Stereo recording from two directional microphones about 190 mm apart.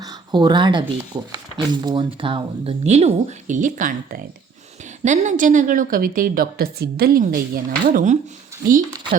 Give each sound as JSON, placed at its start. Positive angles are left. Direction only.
{"t": 0.0, "sound": "a woman's voice", "side_deg": -20}